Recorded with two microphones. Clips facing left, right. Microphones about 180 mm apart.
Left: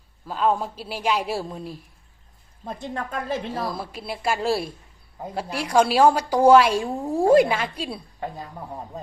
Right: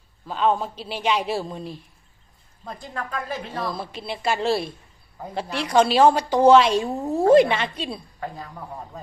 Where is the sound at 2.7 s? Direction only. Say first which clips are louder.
Left 2 dB; 25° left (ahead or behind).